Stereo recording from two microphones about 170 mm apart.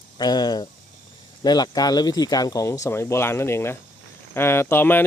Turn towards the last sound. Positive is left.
turn(degrees=10)  # may be behind; listen again after turning